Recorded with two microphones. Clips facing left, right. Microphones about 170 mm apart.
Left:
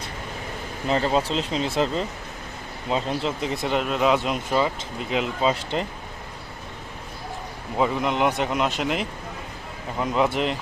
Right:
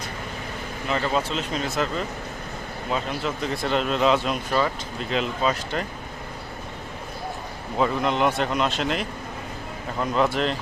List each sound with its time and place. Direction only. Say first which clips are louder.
0.9 s speech: left 3 dB; 30° left (ahead or behind)
7.8 s speech: even; 15° left (ahead or behind)